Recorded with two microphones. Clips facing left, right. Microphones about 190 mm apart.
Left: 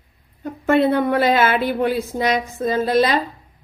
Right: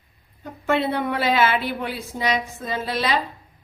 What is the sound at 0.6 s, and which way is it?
Speech, 45° left (ahead or behind).